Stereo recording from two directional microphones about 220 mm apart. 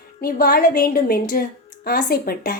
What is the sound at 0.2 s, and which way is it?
A woman's voice, 40° left (ahead or behind).